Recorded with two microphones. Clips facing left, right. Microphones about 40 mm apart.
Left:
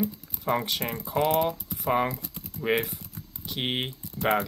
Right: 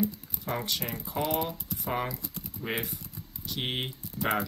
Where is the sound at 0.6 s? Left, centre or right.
Left.